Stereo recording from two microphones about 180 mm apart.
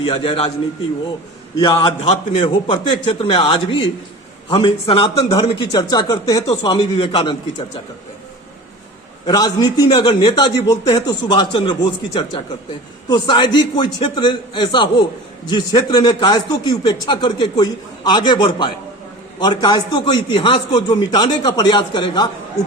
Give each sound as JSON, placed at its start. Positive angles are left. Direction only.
{"t": 0.0, "sound": "a man's voice", "side_deg": 30}
{"t": 1.6, "sound": "a man's voice", "side_deg": 25}
{"t": 6.4, "sound": "a man's voice", "side_deg": 35}
{"t": 6.7, "sound": "a man's voice", "side_deg": 25}
{"t": 9.2, "sound": "a man's voice", "side_deg": 25}